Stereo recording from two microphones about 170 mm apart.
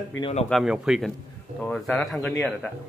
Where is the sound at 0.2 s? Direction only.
40° left (ahead or behind).